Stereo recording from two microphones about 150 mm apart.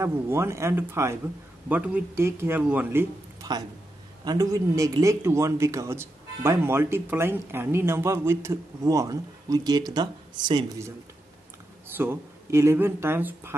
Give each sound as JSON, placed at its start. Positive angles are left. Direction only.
{"t": 0.0, "sound": "speech", "side_deg": -15}
{"t": 3.4, "sound": "speech", "side_deg": -25}
{"t": 12.0, "sound": "speech", "side_deg": -15}